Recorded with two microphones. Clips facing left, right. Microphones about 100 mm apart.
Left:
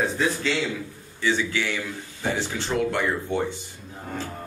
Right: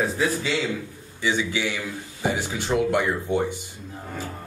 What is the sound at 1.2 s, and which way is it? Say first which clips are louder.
A man's voice: even; 15° right (ahead or behind).